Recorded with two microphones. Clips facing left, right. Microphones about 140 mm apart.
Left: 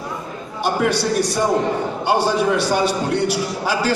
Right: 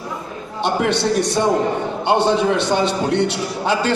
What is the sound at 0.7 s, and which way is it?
A man's voice, 25° right (ahead or behind).